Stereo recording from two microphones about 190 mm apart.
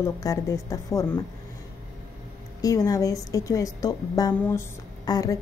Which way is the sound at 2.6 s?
20° left (ahead or behind).